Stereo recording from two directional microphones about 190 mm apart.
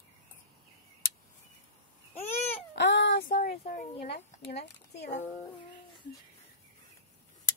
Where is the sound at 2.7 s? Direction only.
70° left (ahead or behind).